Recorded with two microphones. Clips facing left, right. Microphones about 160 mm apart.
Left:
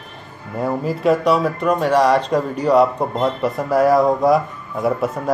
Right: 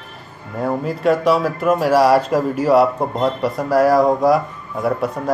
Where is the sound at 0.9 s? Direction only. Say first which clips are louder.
Even; centre (ahead or behind).